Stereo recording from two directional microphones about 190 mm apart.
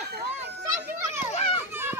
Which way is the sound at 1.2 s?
35° left (ahead or behind).